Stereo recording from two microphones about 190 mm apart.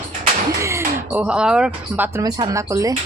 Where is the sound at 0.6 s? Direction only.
15° right (ahead or behind).